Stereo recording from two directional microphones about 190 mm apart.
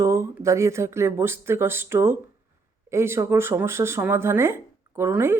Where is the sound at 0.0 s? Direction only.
15° right (ahead or behind).